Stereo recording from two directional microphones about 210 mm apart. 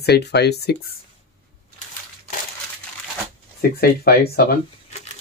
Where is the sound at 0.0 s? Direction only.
50° left (ahead or behind).